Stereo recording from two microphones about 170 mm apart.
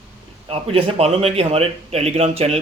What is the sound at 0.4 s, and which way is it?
Speech, 35° right (ahead or behind).